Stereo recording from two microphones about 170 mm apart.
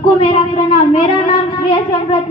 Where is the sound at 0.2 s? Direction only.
35° left (ahead or behind).